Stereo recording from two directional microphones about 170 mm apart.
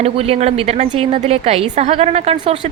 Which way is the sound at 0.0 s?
35° right (ahead or behind).